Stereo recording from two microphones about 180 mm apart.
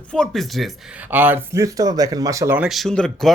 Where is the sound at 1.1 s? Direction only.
10° right (ahead or behind).